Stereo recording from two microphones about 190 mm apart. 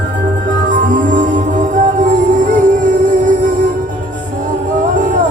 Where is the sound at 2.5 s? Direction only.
40° right (ahead or behind).